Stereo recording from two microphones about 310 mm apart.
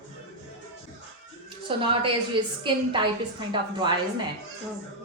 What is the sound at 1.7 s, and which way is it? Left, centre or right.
A woman's voice, centre.